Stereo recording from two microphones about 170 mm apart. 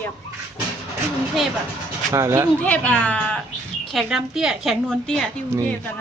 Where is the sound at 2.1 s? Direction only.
15° right (ahead or behind).